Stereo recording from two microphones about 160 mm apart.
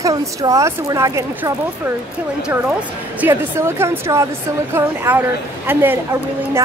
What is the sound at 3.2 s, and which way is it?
A woman's voice, 15° right (ahead or behind).